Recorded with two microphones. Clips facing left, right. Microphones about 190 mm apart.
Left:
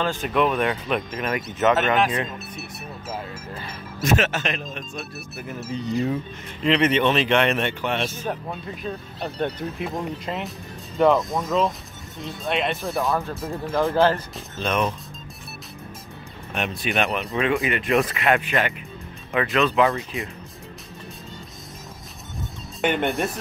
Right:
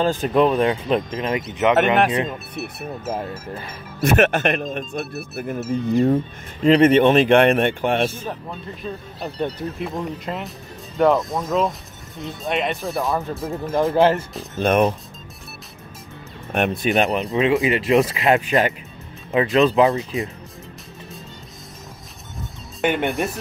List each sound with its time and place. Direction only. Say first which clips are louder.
0.0 s speech: right 5 dB; 40° right (ahead or behind); by 1.8 s 20° right (ahead or behind)
4.0 s speech: right 5 dB; 60° right (ahead or behind)
8.8 s speech: right 1 dB; 5° right (ahead or behind)
13.9 s speech: right 3 dB; 25° right (ahead or behind)
14.6 s speech: right 7 dB; 55° right (ahead or behind)
16.5 s speech: right 7 dB; 55° right (ahead or behind)
16.9 s speech: right 2 dB; 35° right (ahead or behind)
22.8 s speech: right 2 dB; centre (ahead or behind)